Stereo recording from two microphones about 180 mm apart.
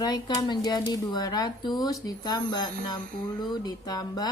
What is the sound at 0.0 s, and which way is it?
Speech, 20° left (ahead or behind).